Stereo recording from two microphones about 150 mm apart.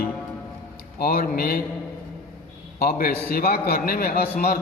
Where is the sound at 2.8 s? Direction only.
80° left.